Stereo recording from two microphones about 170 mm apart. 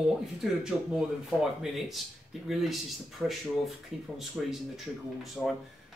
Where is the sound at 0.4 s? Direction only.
Centre (ahead or behind).